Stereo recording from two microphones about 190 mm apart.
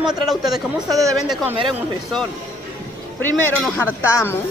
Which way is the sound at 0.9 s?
15° right (ahead or behind).